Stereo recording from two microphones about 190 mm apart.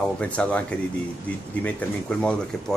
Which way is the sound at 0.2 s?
5° left (ahead or behind).